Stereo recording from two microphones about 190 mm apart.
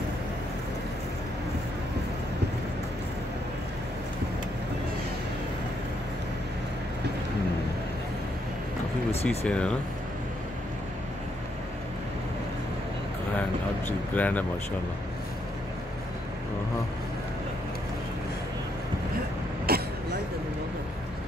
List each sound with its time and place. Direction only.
9.1 s speech: 35° left (ahead or behind)
9.5 s speech: 5° left (ahead or behind)
14.1 s speech: 10° left (ahead or behind)
19.7 s throat clearing: 55° right (ahead or behind)